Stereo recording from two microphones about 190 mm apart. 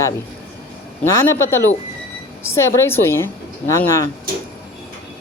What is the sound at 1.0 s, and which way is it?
A woman's voice, 15° left (ahead or behind).